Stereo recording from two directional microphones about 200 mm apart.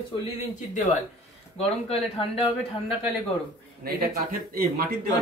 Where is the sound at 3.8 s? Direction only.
50° right (ahead or behind).